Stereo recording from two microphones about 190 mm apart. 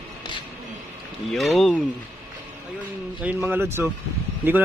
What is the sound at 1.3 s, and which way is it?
Speech, centre (ahead or behind).